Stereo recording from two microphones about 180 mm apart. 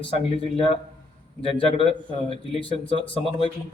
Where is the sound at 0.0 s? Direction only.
35° left (ahead or behind).